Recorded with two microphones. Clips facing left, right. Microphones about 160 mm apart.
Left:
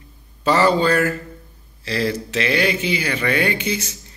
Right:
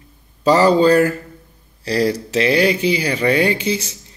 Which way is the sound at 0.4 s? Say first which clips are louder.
Right 4 dB; 35° right (ahead or behind).